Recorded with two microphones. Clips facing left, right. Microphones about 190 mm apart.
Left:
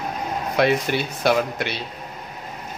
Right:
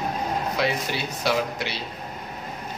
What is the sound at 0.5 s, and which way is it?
Speech, 55° left (ahead or behind).